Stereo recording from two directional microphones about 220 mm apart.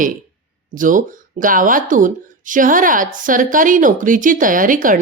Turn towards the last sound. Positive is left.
turn(degrees=-35)  # may be behind; listen again after turning